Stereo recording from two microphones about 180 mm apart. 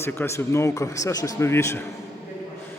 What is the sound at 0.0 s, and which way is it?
A man's voice, 15° left (ahead or behind).